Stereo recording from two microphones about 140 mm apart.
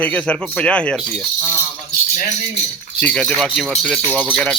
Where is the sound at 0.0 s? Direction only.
10° left (ahead or behind).